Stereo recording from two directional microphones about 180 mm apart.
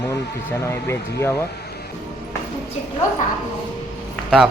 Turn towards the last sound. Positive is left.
turn(degrees=-5)  # may be behind; listen again after turning